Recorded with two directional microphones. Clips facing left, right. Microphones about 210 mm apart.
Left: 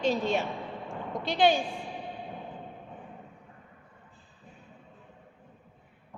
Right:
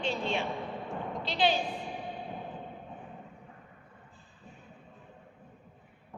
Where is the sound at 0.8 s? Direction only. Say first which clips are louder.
Left 2 dB; 50° left (ahead or behind).